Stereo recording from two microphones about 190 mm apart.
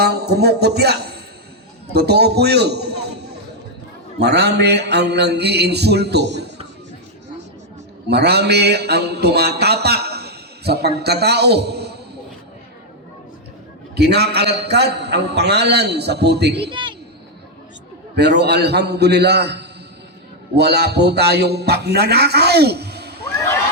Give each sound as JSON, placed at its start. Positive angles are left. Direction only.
{"t": 0.0, "sound": "a man's voice", "side_deg": -60}
{"t": 4.2, "sound": "a man's voice", "side_deg": -60}
{"t": 8.0, "sound": "a sound", "side_deg": -60}
{"t": 13.9, "sound": "a man's voice", "side_deg": -60}
{"t": 16.6, "sound": "a man's voice", "side_deg": -25}
{"t": 18.2, "sound": "a man's voice", "side_deg": -60}